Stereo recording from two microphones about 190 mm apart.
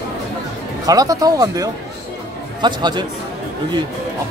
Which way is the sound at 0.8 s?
20° right (ahead or behind).